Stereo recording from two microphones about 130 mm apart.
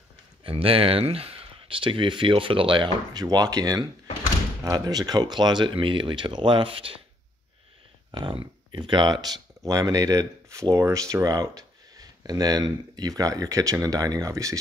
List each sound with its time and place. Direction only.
0.4 s speech: 45° right (ahead or behind)
8.1 s speech: 40° right (ahead or behind)